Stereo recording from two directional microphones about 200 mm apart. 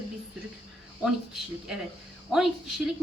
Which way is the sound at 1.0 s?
Centre (ahead or behind).